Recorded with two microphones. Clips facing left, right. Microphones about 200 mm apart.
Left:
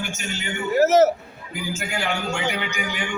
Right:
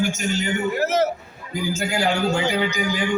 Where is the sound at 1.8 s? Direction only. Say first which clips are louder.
Right 6 dB; 40° right (ahead or behind).